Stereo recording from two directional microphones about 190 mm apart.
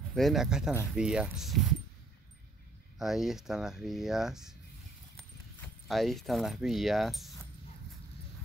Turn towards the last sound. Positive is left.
turn(degrees=0)  # may be behind; listen again after turning